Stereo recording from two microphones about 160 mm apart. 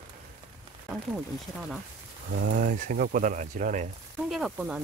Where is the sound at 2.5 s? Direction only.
55° right (ahead or behind).